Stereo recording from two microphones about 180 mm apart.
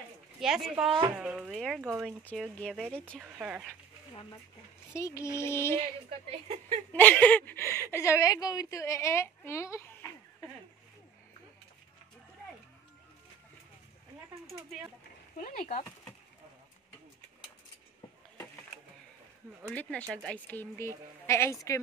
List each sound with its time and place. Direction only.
0.4 s speech: centre (ahead or behind)
3.2 s speech: 10° right (ahead or behind)
4.1 s a woman's voice: 25° left (ahead or behind)
6.0 s a woman's voice: 35° right (ahead or behind)
6.9 s a woman's voice: 10° left (ahead or behind)
14.4 s speech: centre (ahead or behind)
15.3 s speech: 50° left (ahead or behind)
19.7 s a woman's voice: 10° left (ahead or behind)